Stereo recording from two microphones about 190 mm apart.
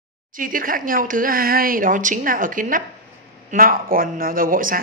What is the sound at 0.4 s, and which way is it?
Speech, 45° right (ahead or behind).